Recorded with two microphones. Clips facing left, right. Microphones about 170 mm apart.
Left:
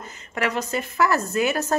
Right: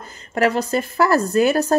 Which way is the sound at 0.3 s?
35° right (ahead or behind).